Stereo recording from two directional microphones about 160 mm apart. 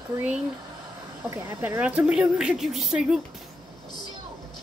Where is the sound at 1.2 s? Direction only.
10° right (ahead or behind).